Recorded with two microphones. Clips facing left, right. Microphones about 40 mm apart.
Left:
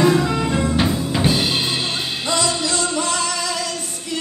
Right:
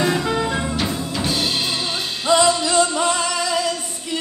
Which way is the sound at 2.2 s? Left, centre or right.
Right.